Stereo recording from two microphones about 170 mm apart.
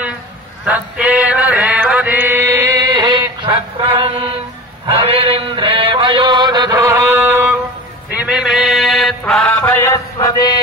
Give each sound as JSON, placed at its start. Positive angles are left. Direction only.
{"t": 0.7, "sound": "mantra", "side_deg": -5}
{"t": 3.5, "sound": "a sound", "side_deg": -35}
{"t": 4.8, "sound": "chant", "side_deg": -35}
{"t": 8.1, "sound": "music", "side_deg": -5}
{"t": 10.1, "sound": "mantra", "side_deg": 25}